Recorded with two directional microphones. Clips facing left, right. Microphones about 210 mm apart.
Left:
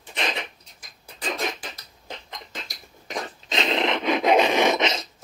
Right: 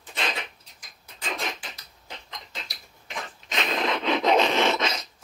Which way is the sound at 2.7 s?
40° left (ahead or behind).